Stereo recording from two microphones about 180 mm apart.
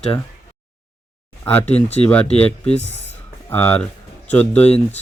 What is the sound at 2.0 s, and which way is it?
Speech, 5° left (ahead or behind).